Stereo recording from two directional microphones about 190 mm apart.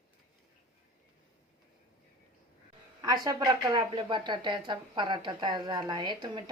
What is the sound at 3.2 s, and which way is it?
A woman's voice, 15° right (ahead or behind).